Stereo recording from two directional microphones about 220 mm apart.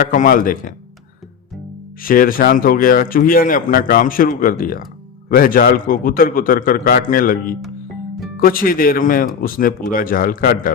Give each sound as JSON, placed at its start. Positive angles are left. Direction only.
{"t": 0.0, "sound": "speech", "side_deg": 35}
{"t": 2.0, "sound": "speech", "side_deg": 40}